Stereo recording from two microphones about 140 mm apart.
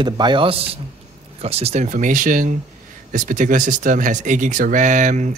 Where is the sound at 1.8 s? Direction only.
65° right (ahead or behind).